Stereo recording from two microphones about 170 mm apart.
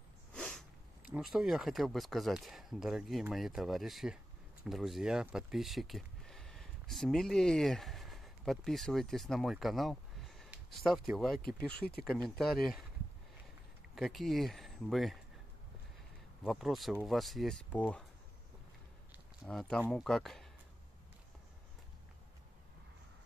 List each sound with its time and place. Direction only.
0.3 s a sound: 5° left (ahead or behind)
1.1 s speech: 5° right (ahead or behind)
11.7 s speech: 70° left (ahead or behind)
12.0 s speech: centre (ahead or behind)
13.9 s speech: centre (ahead or behind)
16.4 s speech: centre (ahead or behind)
19.4 s speech: 5° left (ahead or behind)